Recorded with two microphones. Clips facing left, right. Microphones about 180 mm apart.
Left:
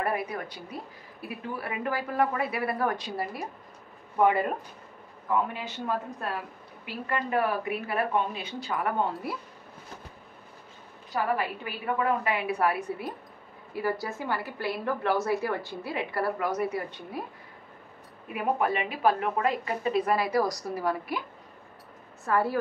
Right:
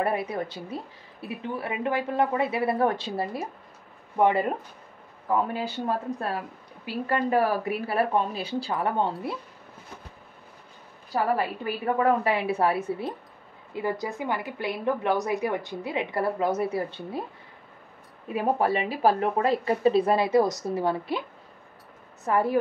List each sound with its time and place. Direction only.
0.0 s a woman's voice: 25° right (ahead or behind)
5.5 s a woman's voice: 35° right (ahead or behind)
11.1 s a woman's voice: 35° right (ahead or behind)
18.3 s a woman's voice: 30° right (ahead or behind)
22.2 s a woman's voice: 20° right (ahead or behind)